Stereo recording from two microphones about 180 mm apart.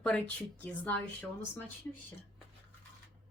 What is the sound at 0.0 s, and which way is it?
Speech, 5° left (ahead or behind).